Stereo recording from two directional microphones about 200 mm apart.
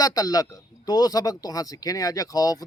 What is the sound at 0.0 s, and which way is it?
A man's voice, 20° left (ahead or behind).